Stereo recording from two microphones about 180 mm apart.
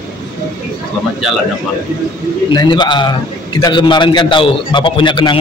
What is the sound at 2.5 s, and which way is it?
A man's voice, 25° left (ahead or behind).